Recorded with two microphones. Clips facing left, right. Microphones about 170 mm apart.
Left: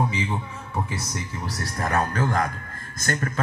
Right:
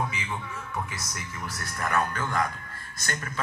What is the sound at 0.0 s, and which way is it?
A man's voice, 35° left (ahead or behind).